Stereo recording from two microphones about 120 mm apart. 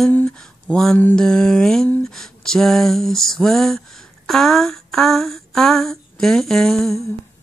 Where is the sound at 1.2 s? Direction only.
5° left (ahead or behind).